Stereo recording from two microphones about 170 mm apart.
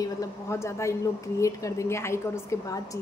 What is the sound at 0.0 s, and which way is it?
Speech, 20° left (ahead or behind).